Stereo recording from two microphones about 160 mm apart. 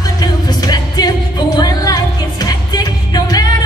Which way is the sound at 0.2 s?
25° left (ahead or behind).